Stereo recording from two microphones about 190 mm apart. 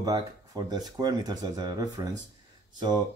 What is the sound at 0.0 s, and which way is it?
Speech, 20° right (ahead or behind).